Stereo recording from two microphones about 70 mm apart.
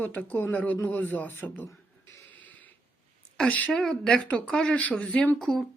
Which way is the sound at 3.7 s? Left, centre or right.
Centre.